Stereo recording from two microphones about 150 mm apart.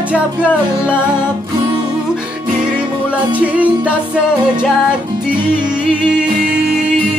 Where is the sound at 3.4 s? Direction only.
10° right (ahead or behind).